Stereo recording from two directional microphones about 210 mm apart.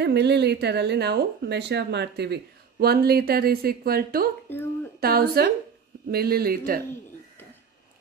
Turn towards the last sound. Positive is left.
turn(degrees=-45)  # may be behind; listen again after turning